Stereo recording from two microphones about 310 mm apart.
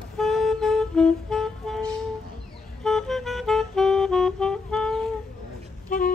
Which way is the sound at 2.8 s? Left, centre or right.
Centre.